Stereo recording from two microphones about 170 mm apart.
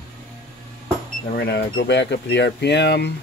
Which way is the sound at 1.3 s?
70° left (ahead or behind).